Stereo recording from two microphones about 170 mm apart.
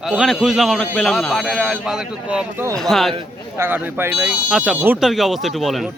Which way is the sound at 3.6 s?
10° right (ahead or behind).